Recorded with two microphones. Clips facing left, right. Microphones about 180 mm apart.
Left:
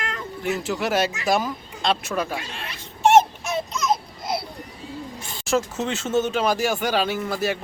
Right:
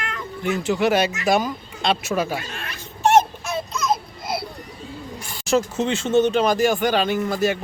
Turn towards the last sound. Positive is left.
turn(degrees=5)  # may be behind; listen again after turning